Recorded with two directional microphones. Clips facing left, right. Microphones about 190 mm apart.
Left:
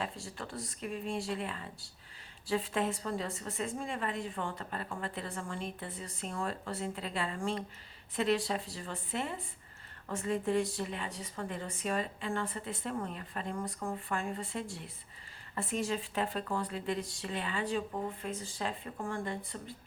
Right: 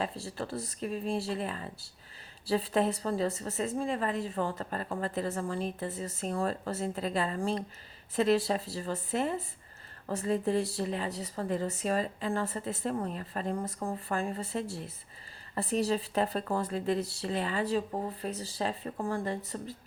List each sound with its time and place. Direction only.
0.0 s a woman's voice: 40° right (ahead or behind)